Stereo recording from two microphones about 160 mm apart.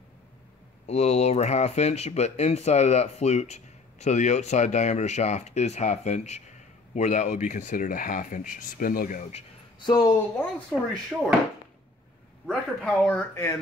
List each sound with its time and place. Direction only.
0.8 s speech: 40° left (ahead or behind); by 9.2 s 60° left (ahead or behind)
9.3 s speech: 30° left (ahead or behind)
11.1 s speech: centre (ahead or behind)
12.4 s speech: centre (ahead or behind)